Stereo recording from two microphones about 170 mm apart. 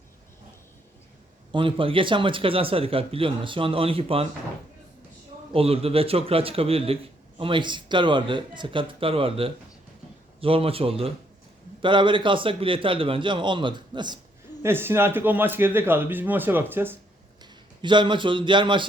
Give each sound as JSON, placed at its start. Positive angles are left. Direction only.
{"t": 1.5, "sound": "a man's voice", "side_deg": -30}
{"t": 5.5, "sound": "a man's voice", "side_deg": -35}
{"t": 14.6, "sound": "speech", "side_deg": -15}
{"t": 17.4, "sound": "speech", "side_deg": -25}